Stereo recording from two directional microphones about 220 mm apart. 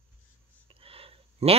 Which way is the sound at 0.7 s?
25° right (ahead or behind).